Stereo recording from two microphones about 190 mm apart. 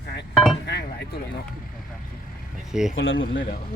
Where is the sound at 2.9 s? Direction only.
90° left.